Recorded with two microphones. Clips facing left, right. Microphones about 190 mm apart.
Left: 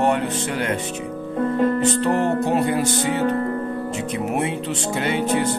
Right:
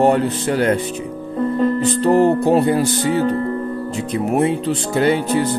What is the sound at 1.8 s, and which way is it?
Music, 35° right (ahead or behind).